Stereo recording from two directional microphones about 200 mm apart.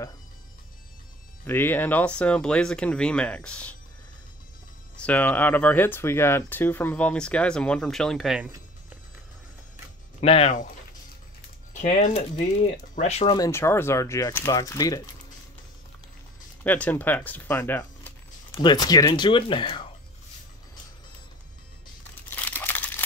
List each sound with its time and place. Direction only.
1.4 s speech: 10° left (ahead or behind)
4.9 s speech: 5° left (ahead or behind)
10.2 s speech: 30° left (ahead or behind)
11.7 s speech: 35° left (ahead or behind)
13.4 s speech: 15° left (ahead or behind)
16.6 s speech: 10° left (ahead or behind)
18.6 s speech: 20° left (ahead or behind)
22.3 s crumpling: 10° left (ahead or behind)